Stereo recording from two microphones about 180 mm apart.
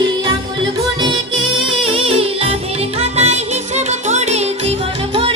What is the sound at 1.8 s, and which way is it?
Music, 30° right (ahead or behind).